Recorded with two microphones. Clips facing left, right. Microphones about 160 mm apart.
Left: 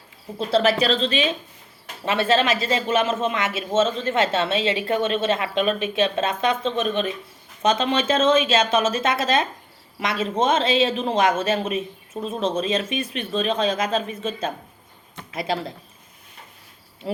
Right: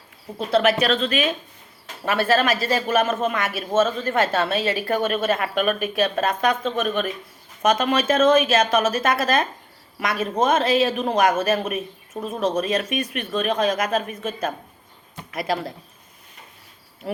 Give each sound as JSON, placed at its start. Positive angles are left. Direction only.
{"t": 0.3, "sound": "a woman's voice", "side_deg": 30}